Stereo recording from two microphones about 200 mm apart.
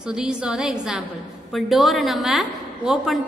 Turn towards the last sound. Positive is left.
turn(degrees=0)  # may be behind; listen again after turning